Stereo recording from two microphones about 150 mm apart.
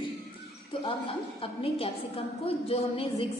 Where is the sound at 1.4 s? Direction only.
40° left (ahead or behind).